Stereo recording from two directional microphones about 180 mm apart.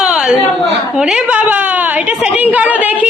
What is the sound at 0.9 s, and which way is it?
A woman's voice, 5° right (ahead or behind).